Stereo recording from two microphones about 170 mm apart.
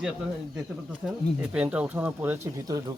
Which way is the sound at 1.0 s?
Centre (ahead or behind).